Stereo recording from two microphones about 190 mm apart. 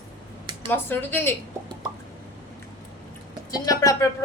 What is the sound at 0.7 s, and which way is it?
Speech, 10° left (ahead or behind).